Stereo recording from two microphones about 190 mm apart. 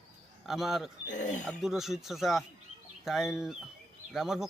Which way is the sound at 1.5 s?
Centre (ahead or behind).